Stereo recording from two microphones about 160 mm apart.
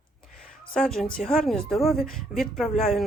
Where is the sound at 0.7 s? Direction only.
5° left (ahead or behind).